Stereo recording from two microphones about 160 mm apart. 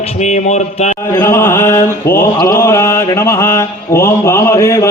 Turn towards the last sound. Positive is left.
turn(degrees=15)  # may be behind; listen again after turning